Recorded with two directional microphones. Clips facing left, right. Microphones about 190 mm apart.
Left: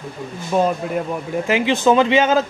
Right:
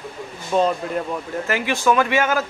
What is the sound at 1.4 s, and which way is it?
Speech, 20° left (ahead or behind).